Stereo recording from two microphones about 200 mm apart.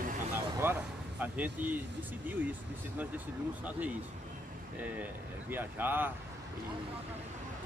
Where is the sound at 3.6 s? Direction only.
5° right (ahead or behind).